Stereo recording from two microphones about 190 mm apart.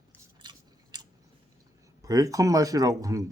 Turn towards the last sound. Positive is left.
turn(degrees=-15)  # may be behind; listen again after turning